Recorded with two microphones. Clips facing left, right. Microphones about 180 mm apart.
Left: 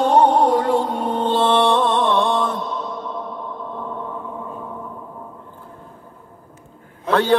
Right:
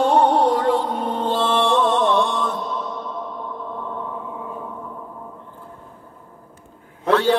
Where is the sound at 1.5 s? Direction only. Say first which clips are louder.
Even; 55° left (ahead or behind).